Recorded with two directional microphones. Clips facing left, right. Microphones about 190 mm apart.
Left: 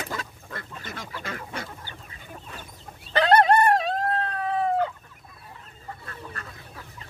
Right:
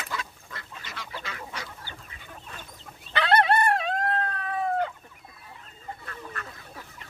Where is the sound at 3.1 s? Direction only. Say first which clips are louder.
Left 4 dB; 40° left (ahead or behind).